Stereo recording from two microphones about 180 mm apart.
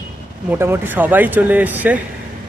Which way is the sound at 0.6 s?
10° right (ahead or behind).